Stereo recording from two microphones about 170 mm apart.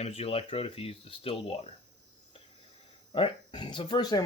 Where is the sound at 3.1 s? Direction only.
30° left (ahead or behind).